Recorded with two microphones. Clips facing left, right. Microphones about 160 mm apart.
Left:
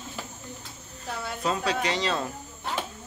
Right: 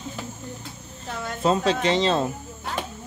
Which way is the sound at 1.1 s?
5° left (ahead or behind).